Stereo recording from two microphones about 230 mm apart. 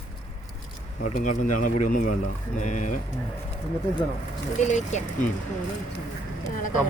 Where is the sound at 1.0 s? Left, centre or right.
Left.